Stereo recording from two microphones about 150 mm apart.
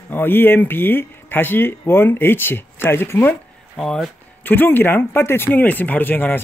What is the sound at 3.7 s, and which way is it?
Speech, centre (ahead or behind).